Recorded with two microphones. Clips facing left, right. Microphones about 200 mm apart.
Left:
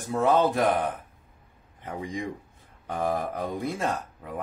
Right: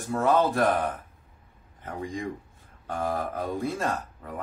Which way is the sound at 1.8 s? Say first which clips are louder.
Even; 15° left (ahead or behind).